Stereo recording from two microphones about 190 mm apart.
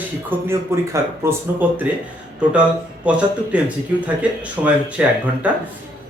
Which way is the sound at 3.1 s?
5° right (ahead or behind).